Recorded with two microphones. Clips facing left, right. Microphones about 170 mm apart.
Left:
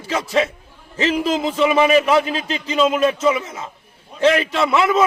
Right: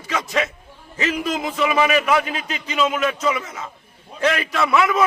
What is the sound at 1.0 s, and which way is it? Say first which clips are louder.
A man's voice: left 4 dB; 30° left (ahead or behind).